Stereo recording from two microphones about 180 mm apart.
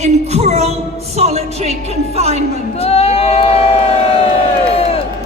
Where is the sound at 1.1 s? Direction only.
35° right (ahead or behind).